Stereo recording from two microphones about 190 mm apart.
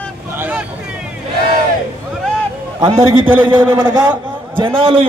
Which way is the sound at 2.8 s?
30° right (ahead or behind).